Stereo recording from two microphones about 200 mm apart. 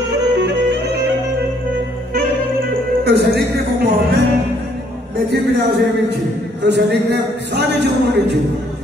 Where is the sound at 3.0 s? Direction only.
55° right (ahead or behind).